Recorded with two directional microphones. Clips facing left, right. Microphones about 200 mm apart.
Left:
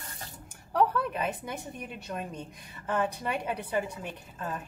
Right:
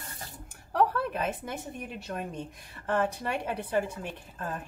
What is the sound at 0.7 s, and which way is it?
A woman's voice, centre (ahead or behind).